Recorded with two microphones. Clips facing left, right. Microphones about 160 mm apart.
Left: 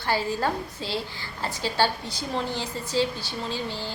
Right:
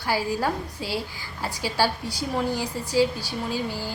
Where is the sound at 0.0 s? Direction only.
10° right (ahead or behind).